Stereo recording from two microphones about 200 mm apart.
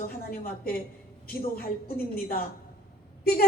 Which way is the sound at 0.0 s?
50° left (ahead or behind).